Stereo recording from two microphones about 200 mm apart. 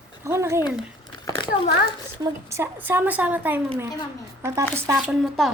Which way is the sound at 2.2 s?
15° right (ahead or behind).